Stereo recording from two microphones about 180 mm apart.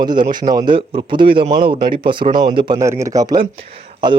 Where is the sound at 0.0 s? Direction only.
25° right (ahead or behind).